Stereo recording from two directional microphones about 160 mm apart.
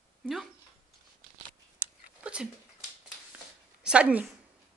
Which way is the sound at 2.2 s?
5° right (ahead or behind).